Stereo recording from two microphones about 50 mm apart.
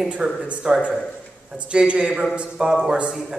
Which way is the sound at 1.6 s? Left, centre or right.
Right.